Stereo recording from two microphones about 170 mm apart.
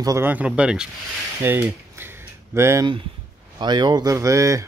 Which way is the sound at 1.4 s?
10° right (ahead or behind).